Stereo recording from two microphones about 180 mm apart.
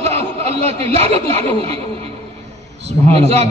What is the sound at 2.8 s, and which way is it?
Speech, 35° right (ahead or behind).